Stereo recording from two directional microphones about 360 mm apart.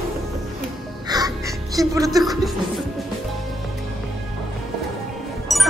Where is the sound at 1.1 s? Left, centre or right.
Centre.